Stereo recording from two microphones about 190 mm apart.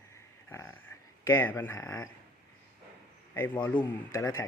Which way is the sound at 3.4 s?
10° left (ahead or behind).